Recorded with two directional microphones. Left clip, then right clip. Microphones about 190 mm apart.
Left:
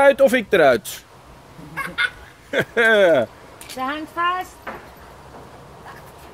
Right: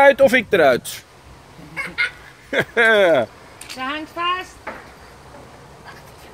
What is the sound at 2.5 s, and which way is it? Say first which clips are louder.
Speech: right 1 dB; centre (ahead or behind).